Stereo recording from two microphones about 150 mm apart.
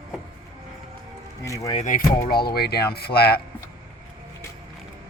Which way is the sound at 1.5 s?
20° left (ahead or behind).